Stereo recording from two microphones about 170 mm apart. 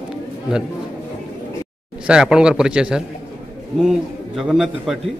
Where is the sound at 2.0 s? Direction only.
5° right (ahead or behind).